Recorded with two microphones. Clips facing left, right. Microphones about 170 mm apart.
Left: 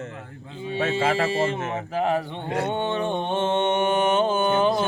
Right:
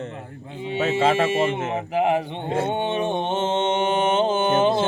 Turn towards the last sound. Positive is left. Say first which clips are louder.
# right 2 dB
turn(degrees=-25)  # may be behind; listen again after turning